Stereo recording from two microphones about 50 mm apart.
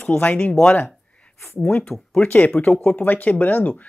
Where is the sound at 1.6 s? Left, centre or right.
Left.